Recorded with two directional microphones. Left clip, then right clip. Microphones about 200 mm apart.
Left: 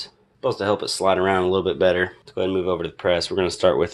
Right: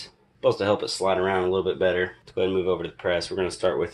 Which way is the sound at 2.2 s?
25° left (ahead or behind).